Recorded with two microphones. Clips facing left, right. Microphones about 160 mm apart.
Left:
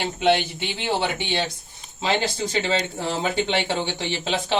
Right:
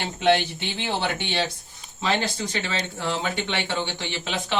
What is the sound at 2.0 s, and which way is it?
Speech, 25° left (ahead or behind).